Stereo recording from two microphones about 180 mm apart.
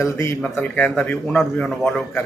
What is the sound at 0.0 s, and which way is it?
A man's voice, 15° left (ahead or behind).